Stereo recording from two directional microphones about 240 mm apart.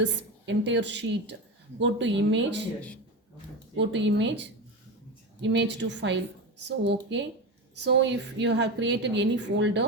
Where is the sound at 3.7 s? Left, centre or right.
Right.